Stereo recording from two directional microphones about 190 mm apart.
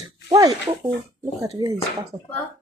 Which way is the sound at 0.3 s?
20° right (ahead or behind).